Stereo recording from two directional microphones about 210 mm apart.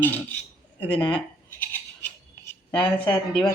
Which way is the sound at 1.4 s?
10° left (ahead or behind).